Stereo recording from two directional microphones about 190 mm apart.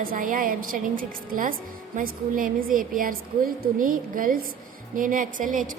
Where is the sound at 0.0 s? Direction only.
45° right (ahead or behind).